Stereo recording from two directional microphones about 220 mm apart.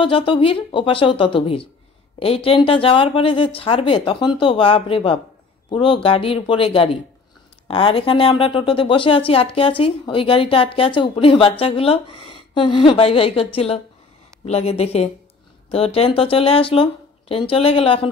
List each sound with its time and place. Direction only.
0.0 s speech: 25° left (ahead or behind)